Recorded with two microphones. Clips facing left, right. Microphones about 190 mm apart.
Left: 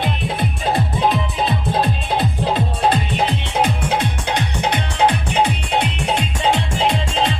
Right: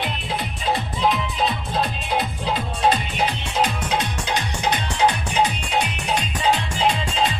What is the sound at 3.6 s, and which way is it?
Music, 60° left (ahead or behind).